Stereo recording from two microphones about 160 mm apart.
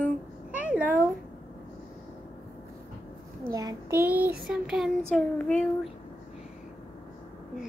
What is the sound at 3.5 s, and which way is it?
Child singing, 20° right (ahead or behind).